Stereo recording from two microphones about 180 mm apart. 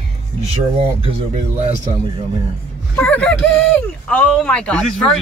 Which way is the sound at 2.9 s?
10° left (ahead or behind).